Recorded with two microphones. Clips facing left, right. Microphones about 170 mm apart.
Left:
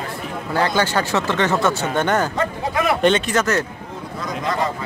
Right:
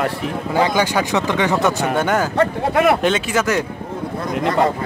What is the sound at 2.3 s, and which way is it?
Speech, 60° right (ahead or behind).